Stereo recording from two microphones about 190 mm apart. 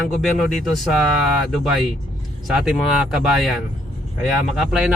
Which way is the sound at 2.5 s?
5° right (ahead or behind).